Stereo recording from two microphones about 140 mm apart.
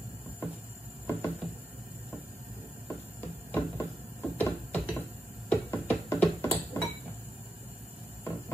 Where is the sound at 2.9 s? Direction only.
20° left (ahead or behind).